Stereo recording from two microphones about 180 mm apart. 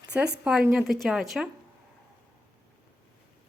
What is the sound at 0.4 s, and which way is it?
Speech, 5° right (ahead or behind).